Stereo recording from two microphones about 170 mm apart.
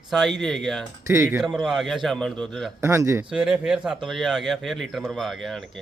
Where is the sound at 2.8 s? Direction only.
15° right (ahead or behind).